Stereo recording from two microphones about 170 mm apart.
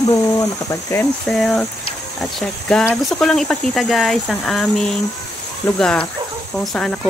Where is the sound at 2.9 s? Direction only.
Centre (ahead or behind).